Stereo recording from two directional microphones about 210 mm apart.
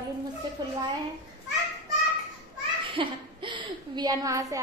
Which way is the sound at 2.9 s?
20° right (ahead or behind).